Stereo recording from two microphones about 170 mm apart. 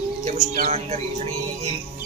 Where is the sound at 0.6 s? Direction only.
40° right (ahead or behind).